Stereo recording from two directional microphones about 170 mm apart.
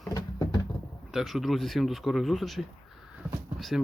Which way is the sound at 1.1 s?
Centre (ahead or behind).